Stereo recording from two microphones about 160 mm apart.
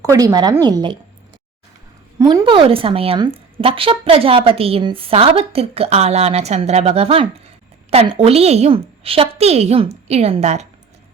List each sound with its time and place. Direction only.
0.0 s speech: 20° right (ahead or behind)
2.1 s a woman's voice: 25° right (ahead or behind); by 10.7 s 45° right (ahead or behind)